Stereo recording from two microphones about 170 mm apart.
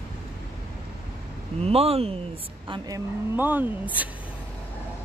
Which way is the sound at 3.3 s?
10° right (ahead or behind).